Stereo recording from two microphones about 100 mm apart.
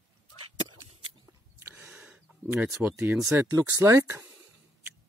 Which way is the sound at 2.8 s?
10° right (ahead or behind).